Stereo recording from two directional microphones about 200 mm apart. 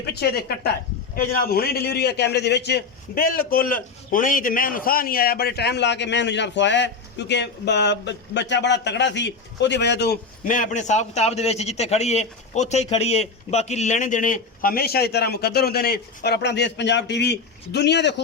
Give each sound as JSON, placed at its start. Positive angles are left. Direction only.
{"t": 0.0, "sound": "a man's voice", "side_deg": 55}